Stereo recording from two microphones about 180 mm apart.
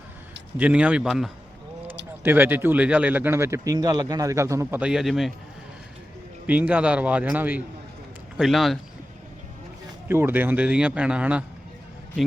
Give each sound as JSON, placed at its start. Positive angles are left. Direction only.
{"t": 0.5, "sound": "a man's voice", "side_deg": -5}
{"t": 6.5, "sound": "a man's voice", "side_deg": -10}
{"t": 10.1, "sound": "speech", "side_deg": -10}